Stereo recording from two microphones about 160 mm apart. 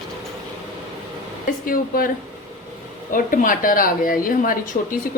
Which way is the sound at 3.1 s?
60° left (ahead or behind).